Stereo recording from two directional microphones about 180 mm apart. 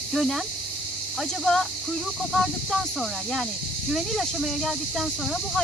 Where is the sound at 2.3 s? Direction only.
Centre (ahead or behind).